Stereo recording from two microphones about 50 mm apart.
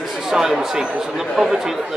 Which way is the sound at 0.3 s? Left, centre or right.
Centre.